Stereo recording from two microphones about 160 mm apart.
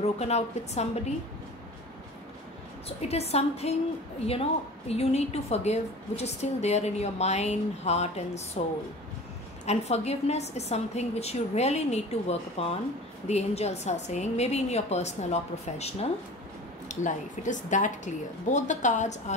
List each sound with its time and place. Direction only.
0.0 s a woman's voice: 45° left (ahead or behind)
3.0 s a woman's voice: 40° left (ahead or behind)